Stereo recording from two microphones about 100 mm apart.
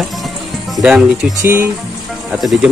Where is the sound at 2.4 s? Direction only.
Centre (ahead or behind).